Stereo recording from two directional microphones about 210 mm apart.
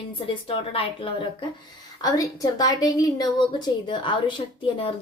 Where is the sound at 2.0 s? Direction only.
15° left (ahead or behind).